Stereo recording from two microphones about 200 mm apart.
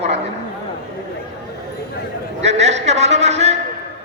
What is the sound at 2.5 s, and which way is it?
A woman's voice, 35° right (ahead or behind).